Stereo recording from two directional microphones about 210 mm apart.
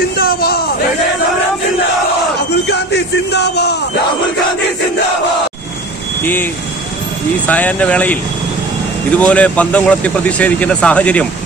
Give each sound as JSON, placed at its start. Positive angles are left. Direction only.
{"t": 0.2, "sound": "a man's voice", "side_deg": 45}
{"t": 2.7, "sound": "a sound", "side_deg": 55}
{"t": 7.4, "sound": "speech", "side_deg": 5}